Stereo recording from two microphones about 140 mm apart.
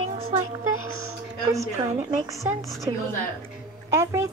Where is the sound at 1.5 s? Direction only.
20° right (ahead or behind).